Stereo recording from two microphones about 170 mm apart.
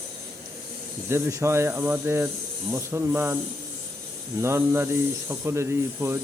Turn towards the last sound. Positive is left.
turn(degrees=-15)  # may be behind; listen again after turning